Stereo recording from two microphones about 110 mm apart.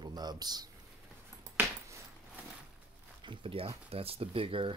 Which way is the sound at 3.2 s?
55° right (ahead or behind).